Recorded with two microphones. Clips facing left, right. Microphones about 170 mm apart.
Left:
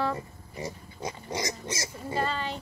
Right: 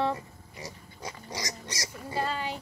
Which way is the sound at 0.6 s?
25° left (ahead or behind).